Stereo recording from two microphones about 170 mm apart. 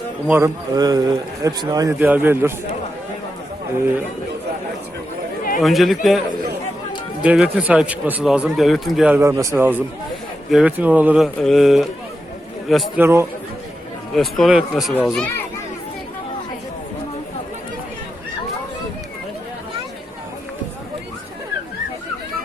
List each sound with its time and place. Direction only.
0.3 s a man's voice: 15° right (ahead or behind)
5.5 s a man's voice: centre (ahead or behind)
9.2 s a man's voice: 15° right (ahead or behind); by 11.9 s centre (ahead or behind)
13.0 s a man's voice: 15° right (ahead or behind)
14.2 s speech: centre (ahead or behind)